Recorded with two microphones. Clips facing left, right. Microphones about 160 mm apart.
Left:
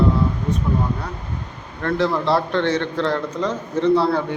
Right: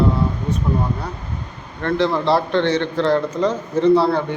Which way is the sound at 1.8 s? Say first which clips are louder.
Right 2 dB; centre (ahead or behind).